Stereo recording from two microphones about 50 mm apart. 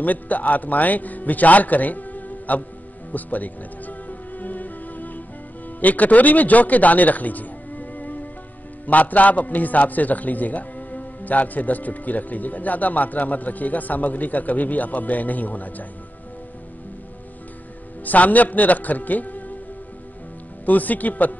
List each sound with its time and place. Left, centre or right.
0.0 s a man's voice: left
3.1 s music: left
5.8 s a man's voice: left
18.0 s a man's voice: left
20.6 s a man's voice: left